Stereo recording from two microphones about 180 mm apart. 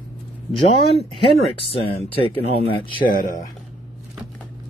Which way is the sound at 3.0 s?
50° left (ahead or behind).